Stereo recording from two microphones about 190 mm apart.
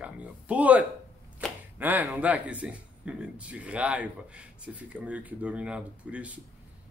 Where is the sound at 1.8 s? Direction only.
10° right (ahead or behind).